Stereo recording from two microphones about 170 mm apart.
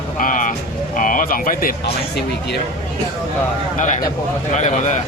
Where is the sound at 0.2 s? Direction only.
50° left (ahead or behind).